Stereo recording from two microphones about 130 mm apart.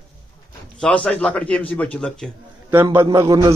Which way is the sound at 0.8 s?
10° left (ahead or behind).